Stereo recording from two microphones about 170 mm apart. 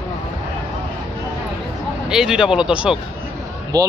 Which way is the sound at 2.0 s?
5° right (ahead or behind).